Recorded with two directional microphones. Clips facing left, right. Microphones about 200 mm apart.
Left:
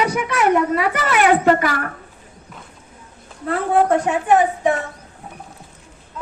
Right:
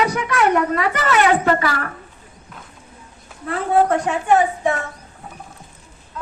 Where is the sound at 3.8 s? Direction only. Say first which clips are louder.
Left 1 dB; 25° left (ahead or behind).